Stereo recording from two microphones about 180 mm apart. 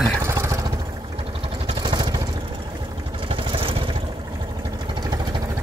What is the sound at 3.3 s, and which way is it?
Vehicle, 30° right (ahead or behind).